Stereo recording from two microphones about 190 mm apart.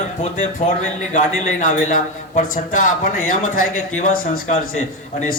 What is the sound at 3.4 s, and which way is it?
Speech, 90° left.